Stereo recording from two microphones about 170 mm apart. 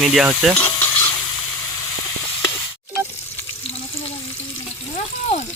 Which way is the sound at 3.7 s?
35° left (ahead or behind).